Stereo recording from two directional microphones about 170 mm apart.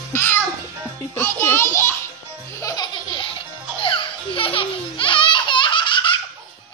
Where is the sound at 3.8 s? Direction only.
30° left (ahead or behind).